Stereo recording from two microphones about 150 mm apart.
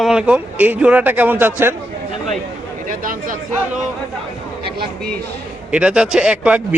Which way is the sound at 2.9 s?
65° right (ahead or behind).